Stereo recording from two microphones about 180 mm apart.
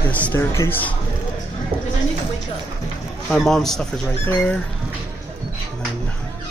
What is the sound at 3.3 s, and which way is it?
Speech, centre (ahead or behind).